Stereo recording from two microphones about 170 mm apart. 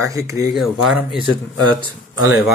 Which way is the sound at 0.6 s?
Centre (ahead or behind).